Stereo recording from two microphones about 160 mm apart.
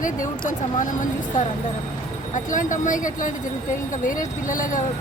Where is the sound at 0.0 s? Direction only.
55° left (ahead or behind).